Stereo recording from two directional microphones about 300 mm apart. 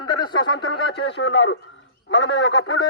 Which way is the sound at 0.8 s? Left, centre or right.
Left.